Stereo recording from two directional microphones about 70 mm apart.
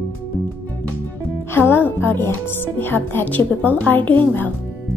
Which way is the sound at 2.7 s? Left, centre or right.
Left.